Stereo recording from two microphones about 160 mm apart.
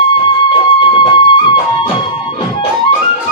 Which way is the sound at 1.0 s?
30° left (ahead or behind).